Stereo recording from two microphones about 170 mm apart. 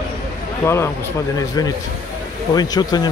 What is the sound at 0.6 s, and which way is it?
A man's voice, 15° left (ahead or behind).